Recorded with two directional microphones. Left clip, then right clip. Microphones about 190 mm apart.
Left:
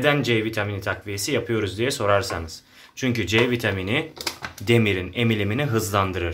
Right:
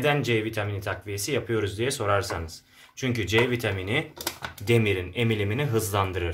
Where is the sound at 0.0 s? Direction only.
Centre (ahead or behind).